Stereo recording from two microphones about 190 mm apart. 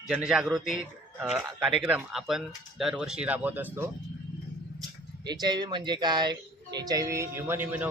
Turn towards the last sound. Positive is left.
turn(degrees=-10)  # may be behind; listen again after turning